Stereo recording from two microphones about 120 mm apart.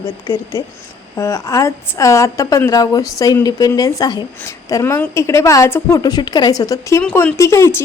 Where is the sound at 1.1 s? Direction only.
25° left (ahead or behind).